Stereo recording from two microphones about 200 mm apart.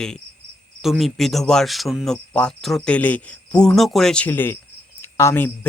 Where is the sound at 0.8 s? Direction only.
Centre (ahead or behind).